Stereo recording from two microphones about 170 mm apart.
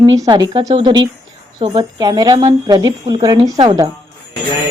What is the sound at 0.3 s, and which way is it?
Speech, 30° right (ahead or behind).